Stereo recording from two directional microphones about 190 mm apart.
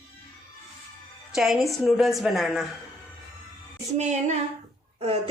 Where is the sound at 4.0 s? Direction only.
35° right (ahead or behind).